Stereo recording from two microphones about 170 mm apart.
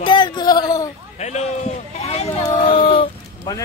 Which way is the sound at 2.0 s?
40° left (ahead or behind).